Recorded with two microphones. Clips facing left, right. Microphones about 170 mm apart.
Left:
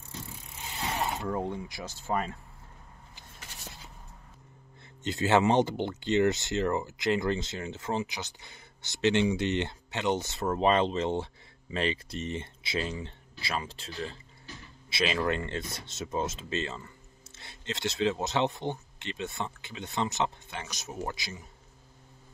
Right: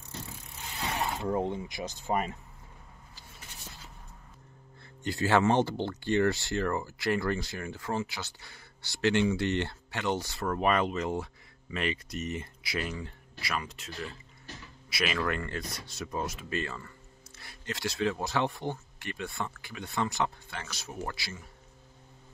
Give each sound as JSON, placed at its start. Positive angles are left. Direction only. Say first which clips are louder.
{"t": 0.7, "sound": "mechanisms", "louder": "left 1 dB", "side_deg": 20}
{"t": 1.2, "sound": "speech", "louder": "right 2 dB", "side_deg": -20}
{"t": 5.0, "sound": "speech", "louder": "left 1 dB", "side_deg": 20}